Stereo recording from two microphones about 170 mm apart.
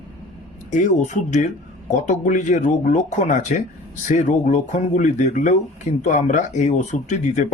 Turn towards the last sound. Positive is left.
turn(degrees=45)  # may be behind; listen again after turning